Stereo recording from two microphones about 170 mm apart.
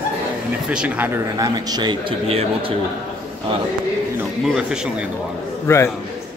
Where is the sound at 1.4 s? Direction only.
25° right (ahead or behind).